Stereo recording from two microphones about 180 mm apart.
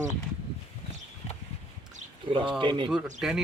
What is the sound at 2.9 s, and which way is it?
Speech, 5° right (ahead or behind).